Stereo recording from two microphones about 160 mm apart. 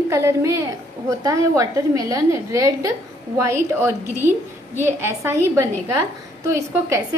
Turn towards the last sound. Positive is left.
turn(degrees=-15)  # may be behind; listen again after turning